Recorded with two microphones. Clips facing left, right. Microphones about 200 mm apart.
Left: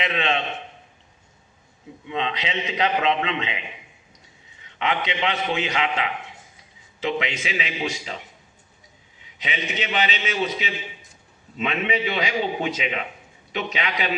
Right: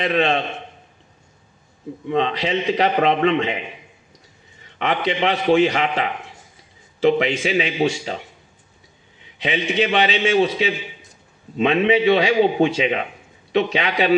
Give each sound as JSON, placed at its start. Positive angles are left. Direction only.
{"t": 0.1, "sound": "a man's voice", "side_deg": -40}
{"t": 2.0, "sound": "a man's voice", "side_deg": -40}
{"t": 4.7, "sound": "a man's voice", "side_deg": -40}
{"t": 9.4, "sound": "a man's voice", "side_deg": -35}
{"t": 11.5, "sound": "a man's voice", "side_deg": -35}